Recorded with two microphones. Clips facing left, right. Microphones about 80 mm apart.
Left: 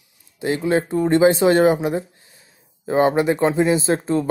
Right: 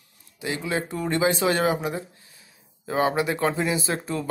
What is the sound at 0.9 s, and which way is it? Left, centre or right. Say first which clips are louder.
Speech: left 8 dB; left.